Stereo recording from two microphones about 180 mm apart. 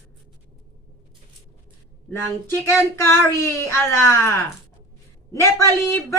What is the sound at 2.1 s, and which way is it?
Speech, 15° left (ahead or behind).